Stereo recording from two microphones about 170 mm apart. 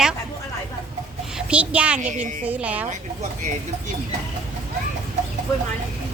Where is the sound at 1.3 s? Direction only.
5° right (ahead or behind).